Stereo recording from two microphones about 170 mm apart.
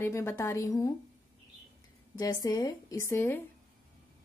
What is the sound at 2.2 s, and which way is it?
A woman's voice, 20° left (ahead or behind).